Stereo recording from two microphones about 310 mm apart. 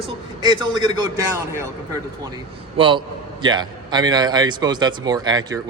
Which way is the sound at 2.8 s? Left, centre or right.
Centre.